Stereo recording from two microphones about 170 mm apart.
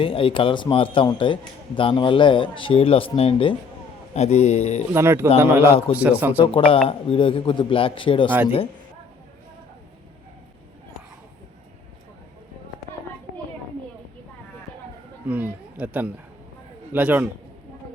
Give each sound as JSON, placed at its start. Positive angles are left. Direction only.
{"t": 0.0, "sound": "a man's voice", "side_deg": 30}
{"t": 4.9, "sound": "speech", "side_deg": -15}
{"t": 6.4, "sound": "a man's voice", "side_deg": 30}
{"t": 15.3, "sound": "a sound", "side_deg": -10}
{"t": 16.9, "sound": "speech", "side_deg": -10}